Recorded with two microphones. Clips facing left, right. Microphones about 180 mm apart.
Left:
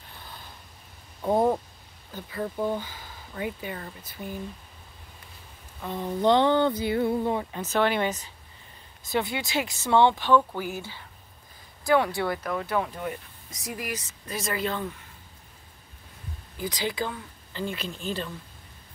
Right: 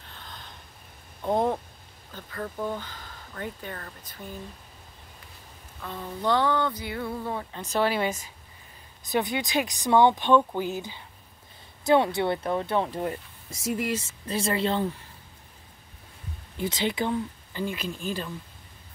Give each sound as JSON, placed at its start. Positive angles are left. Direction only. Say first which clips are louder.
{"t": 0.1, "sound": "a sound", "louder": "even", "side_deg": 10}
{"t": 2.1, "sound": "speech", "louder": "left 3 dB", "side_deg": 10}
{"t": 5.8, "sound": "speech", "louder": "left 6 dB", "side_deg": 20}
{"t": 8.0, "sound": "speech", "louder": "even", "side_deg": -10}
{"t": 16.5, "sound": "speech", "louder": "right 2 dB", "side_deg": -25}